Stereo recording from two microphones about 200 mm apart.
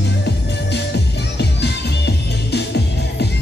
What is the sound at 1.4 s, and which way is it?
Music, 55° left (ahead or behind).